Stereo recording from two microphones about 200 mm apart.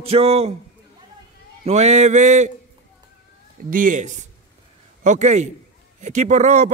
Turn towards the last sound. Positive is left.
turn(degrees=-40)  # may be behind; listen again after turning